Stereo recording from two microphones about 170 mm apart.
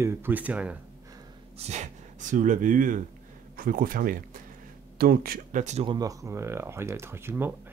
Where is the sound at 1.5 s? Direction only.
40° right (ahead or behind).